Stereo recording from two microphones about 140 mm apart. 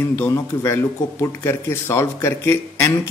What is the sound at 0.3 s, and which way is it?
A man's voice, 20° left (ahead or behind).